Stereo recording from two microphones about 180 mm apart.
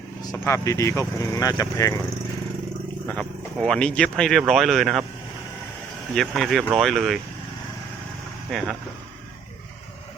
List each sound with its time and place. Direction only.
0.4 s speech: 15° left (ahead or behind)
3.1 s speech: 5° left (ahead or behind)
6.1 s speech: centre (ahead or behind)
8.4 s speech: centre (ahead or behind)